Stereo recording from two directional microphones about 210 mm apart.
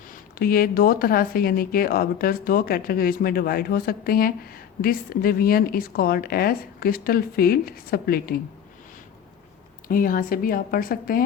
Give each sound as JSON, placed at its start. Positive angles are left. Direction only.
{"t": 0.1, "sound": "speech", "side_deg": 45}
{"t": 9.9, "sound": "speech", "side_deg": 40}